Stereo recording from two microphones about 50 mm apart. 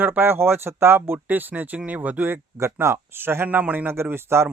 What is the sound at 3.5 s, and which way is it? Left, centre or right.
Speech, right.